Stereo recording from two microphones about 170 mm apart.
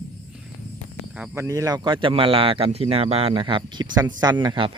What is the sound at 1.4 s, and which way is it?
Speech, 20° right (ahead or behind).